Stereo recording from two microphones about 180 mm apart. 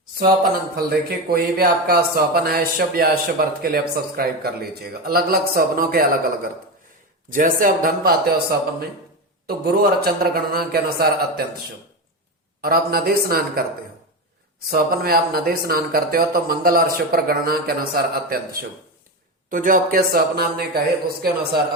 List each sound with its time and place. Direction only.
0.9 s a man's voice: 60° right (ahead or behind)
12.6 s speech: 55° right (ahead or behind)
14.7 s speech: 55° right (ahead or behind)
19.5 s speech: 50° right (ahead or behind)